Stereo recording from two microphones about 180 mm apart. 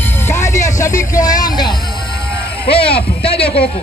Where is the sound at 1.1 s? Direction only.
20° left (ahead or behind).